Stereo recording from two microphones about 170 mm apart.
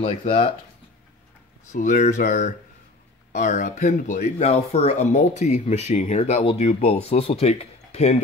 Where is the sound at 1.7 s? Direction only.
45° left (ahead or behind).